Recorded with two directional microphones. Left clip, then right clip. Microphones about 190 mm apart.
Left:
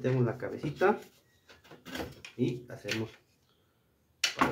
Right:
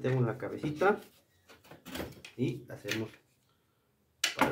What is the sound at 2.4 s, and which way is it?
Speech, 5° left (ahead or behind).